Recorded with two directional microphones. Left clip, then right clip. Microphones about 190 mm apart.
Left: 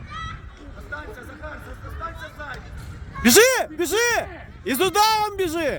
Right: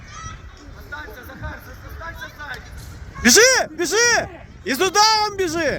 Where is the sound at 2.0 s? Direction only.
25° left (ahead or behind).